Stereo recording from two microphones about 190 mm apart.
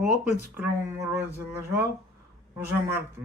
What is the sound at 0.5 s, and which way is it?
Speech, 15° right (ahead or behind).